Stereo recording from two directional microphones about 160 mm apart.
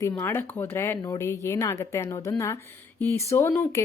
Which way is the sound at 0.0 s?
15° left (ahead or behind).